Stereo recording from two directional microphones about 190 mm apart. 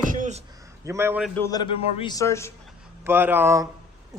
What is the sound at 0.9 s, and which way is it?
Speech, 10° right (ahead or behind).